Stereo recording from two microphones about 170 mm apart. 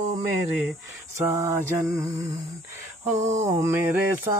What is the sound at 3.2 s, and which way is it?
Speech, 45° right (ahead or behind).